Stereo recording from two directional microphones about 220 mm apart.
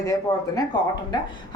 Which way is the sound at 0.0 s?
15° left (ahead or behind).